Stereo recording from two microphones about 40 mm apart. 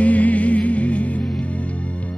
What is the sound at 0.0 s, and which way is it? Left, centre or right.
Music, left.